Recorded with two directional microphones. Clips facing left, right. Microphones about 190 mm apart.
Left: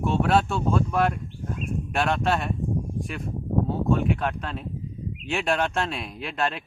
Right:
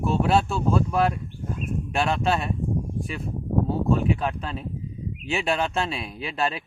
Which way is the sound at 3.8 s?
Centre (ahead or behind).